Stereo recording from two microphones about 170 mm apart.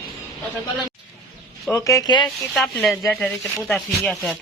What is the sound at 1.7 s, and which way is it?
Speech, 20° left (ahead or behind).